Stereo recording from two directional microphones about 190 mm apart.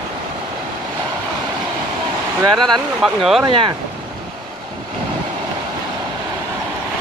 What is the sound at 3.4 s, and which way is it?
Speech, 25° right (ahead or behind).